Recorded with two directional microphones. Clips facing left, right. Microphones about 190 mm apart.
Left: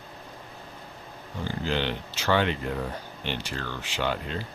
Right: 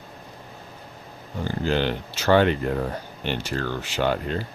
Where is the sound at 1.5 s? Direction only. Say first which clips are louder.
Right 5 dB; 45° right (ahead or behind).